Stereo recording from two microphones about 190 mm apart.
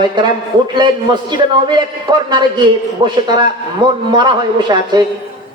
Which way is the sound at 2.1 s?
25° right (ahead or behind).